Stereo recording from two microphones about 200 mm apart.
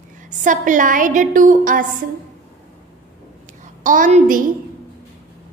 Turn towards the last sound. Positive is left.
turn(degrees=-40)  # may be behind; listen again after turning